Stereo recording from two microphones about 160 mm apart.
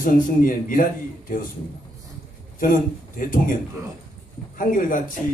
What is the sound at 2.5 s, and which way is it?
A man's voice, 60° left (ahead or behind).